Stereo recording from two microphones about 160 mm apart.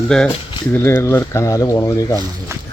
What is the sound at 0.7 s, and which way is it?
Speech, 15° left (ahead or behind).